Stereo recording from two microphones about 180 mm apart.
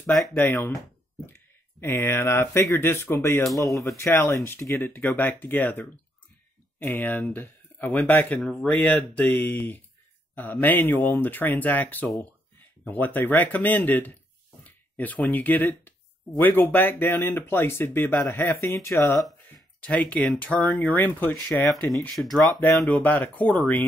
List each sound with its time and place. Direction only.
0.0 s speech: centre (ahead or behind)